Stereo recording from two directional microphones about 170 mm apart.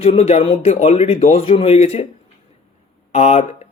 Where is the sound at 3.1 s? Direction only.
40° left (ahead or behind).